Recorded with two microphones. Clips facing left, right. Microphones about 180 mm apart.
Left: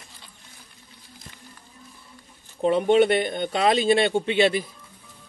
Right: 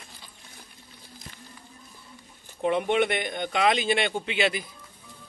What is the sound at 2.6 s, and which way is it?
Speech, 35° left (ahead or behind).